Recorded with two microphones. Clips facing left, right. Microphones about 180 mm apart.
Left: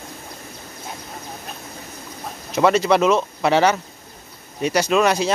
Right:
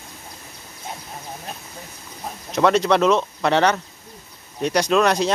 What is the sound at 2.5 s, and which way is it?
Speech, 5° left (ahead or behind).